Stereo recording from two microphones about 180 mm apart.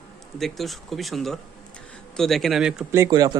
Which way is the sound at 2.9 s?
15° right (ahead or behind).